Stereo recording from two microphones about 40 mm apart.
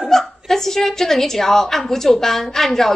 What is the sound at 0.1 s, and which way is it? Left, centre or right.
A woman's voice, centre.